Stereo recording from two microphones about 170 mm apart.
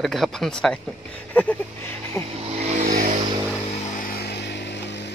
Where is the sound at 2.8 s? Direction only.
55° right (ahead or behind).